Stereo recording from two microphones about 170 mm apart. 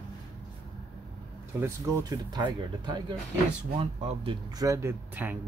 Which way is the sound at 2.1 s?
25° right (ahead or behind).